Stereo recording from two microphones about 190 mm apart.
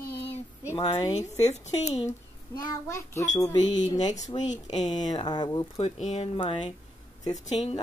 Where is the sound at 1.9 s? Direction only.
20° left (ahead or behind).